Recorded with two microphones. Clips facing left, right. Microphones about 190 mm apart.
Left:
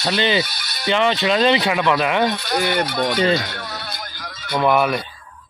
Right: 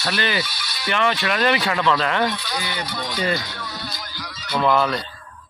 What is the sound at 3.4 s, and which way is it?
Music, 60° left (ahead or behind).